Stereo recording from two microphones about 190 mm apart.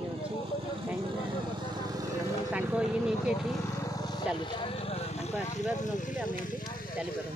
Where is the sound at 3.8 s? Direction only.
20° left (ahead or behind).